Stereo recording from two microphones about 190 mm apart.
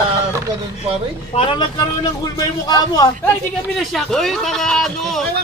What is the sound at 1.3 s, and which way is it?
Speech, 30° left (ahead or behind).